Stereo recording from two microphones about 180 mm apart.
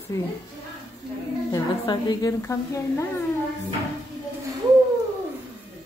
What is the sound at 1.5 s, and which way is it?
A woman's voice, 20° left (ahead or behind).